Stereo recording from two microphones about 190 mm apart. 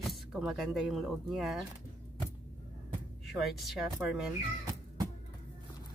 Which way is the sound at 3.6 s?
5° right (ahead or behind).